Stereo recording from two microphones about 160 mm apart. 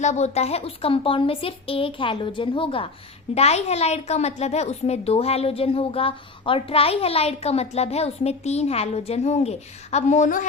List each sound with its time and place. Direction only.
0.0 s a woman's voice: 45° left (ahead or behind)